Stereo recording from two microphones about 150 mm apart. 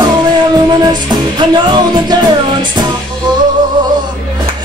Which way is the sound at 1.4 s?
30° right (ahead or behind).